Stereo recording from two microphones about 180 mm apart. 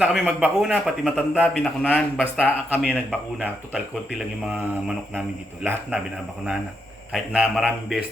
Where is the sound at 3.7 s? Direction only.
5° right (ahead or behind).